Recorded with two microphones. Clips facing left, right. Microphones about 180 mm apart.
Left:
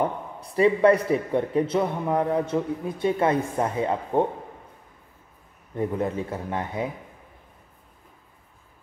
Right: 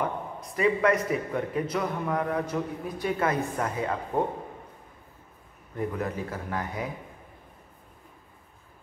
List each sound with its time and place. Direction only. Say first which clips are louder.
0.0 s a man's voice: left 4 dB; 30° left (ahead or behind)
5.8 s a man's voice: left 4 dB; 25° left (ahead or behind)